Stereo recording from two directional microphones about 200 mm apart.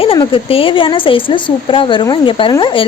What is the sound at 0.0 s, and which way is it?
Speech, 25° left (ahead or behind).